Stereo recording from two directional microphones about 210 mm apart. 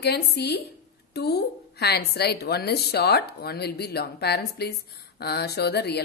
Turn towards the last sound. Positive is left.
turn(degrees=50)  # may be behind; listen again after turning